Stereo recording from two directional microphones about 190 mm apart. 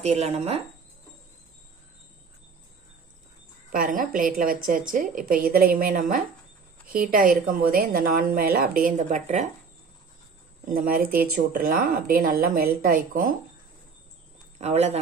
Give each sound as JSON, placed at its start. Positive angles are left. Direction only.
{"t": 0.0, "sound": "speech", "side_deg": -35}
{"t": 3.7, "sound": "speech", "side_deg": -45}
{"t": 10.6, "sound": "speech", "side_deg": -50}
{"t": 14.6, "sound": "speech", "side_deg": -35}